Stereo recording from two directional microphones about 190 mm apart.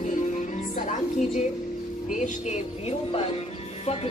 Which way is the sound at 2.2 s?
35° left (ahead or behind).